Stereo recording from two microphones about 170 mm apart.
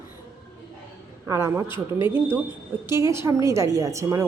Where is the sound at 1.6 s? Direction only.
30° left (ahead or behind).